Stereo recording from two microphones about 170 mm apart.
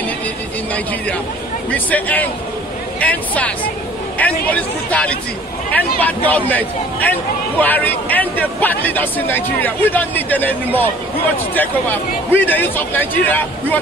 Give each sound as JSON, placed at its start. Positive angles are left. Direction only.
{"t": 1.7, "sound": "a man's voice", "side_deg": 10}